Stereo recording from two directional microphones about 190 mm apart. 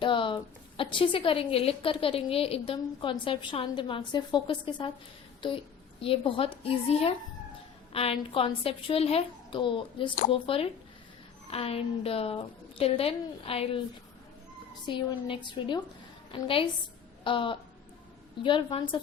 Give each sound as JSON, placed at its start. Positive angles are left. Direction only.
{"t": 0.0, "sound": "a woman's voice", "side_deg": 25}
{"t": 14.8, "sound": "a woman's voice", "side_deg": 25}